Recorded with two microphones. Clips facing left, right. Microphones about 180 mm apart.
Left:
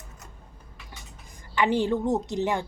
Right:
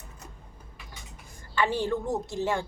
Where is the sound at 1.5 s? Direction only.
15° left (ahead or behind).